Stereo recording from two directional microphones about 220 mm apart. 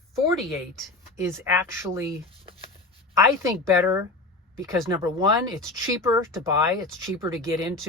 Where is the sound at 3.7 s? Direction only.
15° right (ahead or behind).